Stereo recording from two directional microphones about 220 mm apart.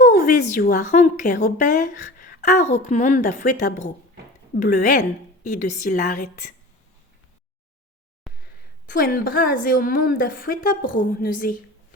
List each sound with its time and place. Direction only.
0.6 s a woman's voice: 35° left (ahead or behind)
8.3 s a sound: centre (ahead or behind)
8.9 s a woman's voice: 40° left (ahead or behind)